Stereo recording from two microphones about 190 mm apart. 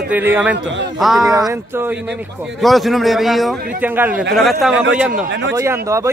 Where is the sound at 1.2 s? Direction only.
20° right (ahead or behind).